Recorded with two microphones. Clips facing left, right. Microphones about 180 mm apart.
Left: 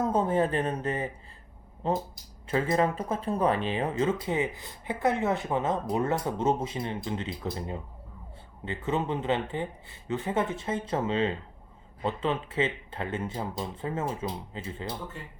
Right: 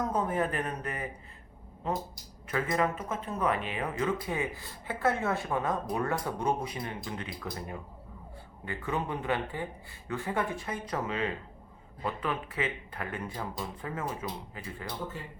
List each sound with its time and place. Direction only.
0.0 s speech: 30° left (ahead or behind)